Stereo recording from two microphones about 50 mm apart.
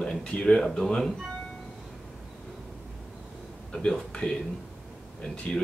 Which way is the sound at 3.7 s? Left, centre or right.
Centre.